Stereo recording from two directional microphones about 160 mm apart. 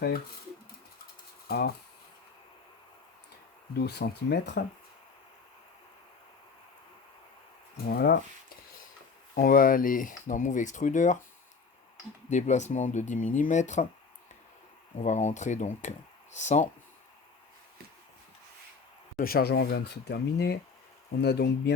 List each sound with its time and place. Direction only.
1.5 s speech: 80° left
3.8 s speech: 85° left
7.9 s speech: 75° left (ahead or behind)
9.3 s speech: 60° left (ahead or behind)
12.3 s speech: 50° left (ahead or behind)
14.9 s speech: 45° left (ahead or behind)
19.1 s speech: 65° left (ahead or behind); by 21.7 s 85° left